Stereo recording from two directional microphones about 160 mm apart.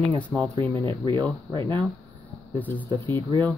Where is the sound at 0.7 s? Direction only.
30° right (ahead or behind).